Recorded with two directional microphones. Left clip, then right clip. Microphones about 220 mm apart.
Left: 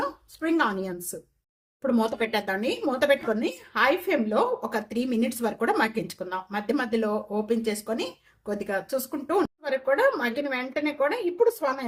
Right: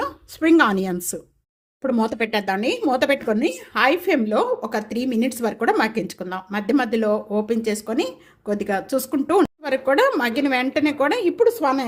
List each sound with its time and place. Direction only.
0.0 s speech: 40° right (ahead or behind)
1.8 s speech: 30° right (ahead or behind)